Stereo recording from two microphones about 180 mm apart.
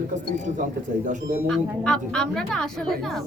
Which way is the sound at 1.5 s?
5° left (ahead or behind).